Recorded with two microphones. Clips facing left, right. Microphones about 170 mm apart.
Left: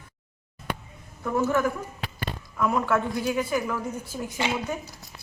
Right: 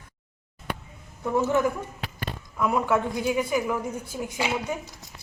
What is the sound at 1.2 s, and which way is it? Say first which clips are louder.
A man's voice: right 1 dB; 20° right (ahead or behind).